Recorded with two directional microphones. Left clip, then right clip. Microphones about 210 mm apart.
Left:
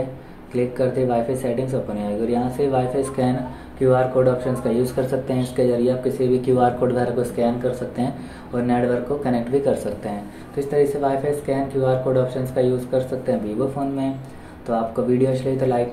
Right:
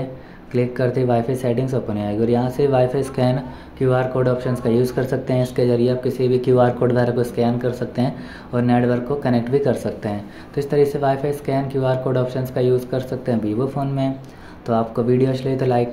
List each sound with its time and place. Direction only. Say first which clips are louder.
0.5 s speech: right 1 dB; 50° right (ahead or behind)
15.0 s speech: right 1 dB; 55° right (ahead or behind)